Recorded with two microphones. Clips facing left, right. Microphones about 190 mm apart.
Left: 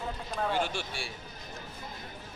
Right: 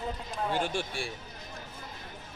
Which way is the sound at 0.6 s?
50° right (ahead or behind).